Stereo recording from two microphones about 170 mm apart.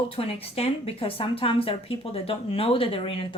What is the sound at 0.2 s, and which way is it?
Speech, 35° left (ahead or behind).